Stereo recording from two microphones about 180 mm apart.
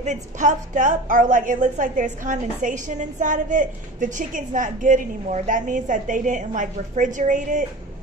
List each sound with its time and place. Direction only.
0.0 s a woman's voice: 45° right (ahead or behind)